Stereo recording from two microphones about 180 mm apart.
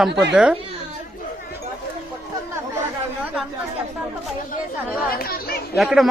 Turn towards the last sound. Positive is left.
turn(degrees=0)  # may be behind; listen again after turning